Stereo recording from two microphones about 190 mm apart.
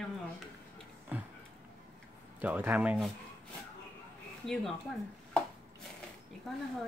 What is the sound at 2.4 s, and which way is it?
Speech, 10° right (ahead or behind).